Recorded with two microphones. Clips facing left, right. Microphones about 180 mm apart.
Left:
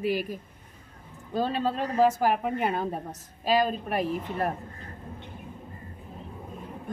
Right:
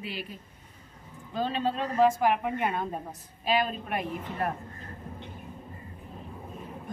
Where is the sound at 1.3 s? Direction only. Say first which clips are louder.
Left 2 dB; 40° left (ahead or behind).